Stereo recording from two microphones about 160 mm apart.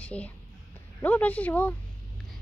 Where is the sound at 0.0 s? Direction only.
10° left (ahead or behind).